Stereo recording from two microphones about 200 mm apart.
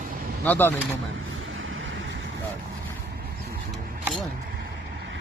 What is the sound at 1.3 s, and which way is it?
Vehicle, 80° right.